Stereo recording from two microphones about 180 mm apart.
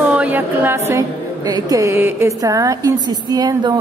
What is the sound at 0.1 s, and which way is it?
A woman's voice, 10° right (ahead or behind).